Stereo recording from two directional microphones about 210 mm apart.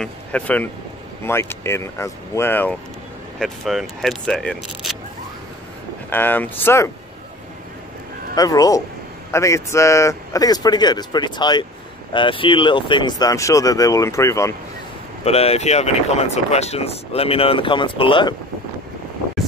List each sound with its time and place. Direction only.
0.0 s speech: 5° left (ahead or behind)
6.0 s speech: 10° left (ahead or behind)
8.4 s speech: 15° left (ahead or behind)
15.2 s speech: 30° left (ahead or behind)